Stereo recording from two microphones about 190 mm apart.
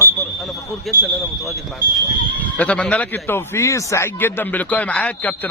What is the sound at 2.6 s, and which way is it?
A man's voice, 5° left (ahead or behind).